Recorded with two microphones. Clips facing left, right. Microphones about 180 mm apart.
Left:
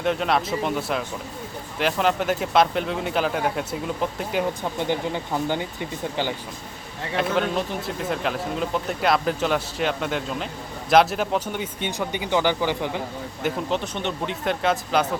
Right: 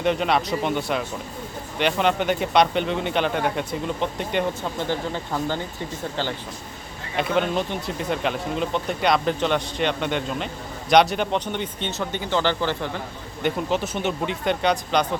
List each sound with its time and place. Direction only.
0.0 s speech: centre (ahead or behind)
4.8 s speech: 15° left (ahead or behind)
7.2 s speech: centre (ahead or behind)
13.4 s speech: centre (ahead or behind)